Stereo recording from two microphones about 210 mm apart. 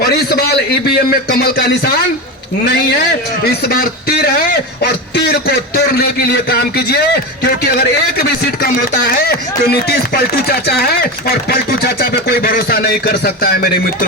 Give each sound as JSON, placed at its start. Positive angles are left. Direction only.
{"t": 0.0, "sound": "speech", "side_deg": 50}